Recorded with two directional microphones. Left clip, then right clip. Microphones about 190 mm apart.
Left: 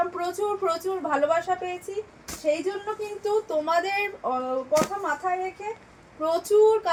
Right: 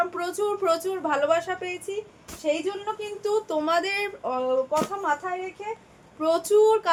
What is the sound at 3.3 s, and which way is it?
Speech, 15° right (ahead or behind).